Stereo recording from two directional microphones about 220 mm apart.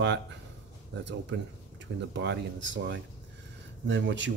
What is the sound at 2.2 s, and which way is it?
Speech, 55° right (ahead or behind).